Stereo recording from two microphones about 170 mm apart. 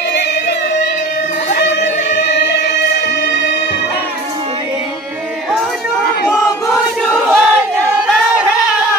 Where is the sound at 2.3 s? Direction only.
90° left.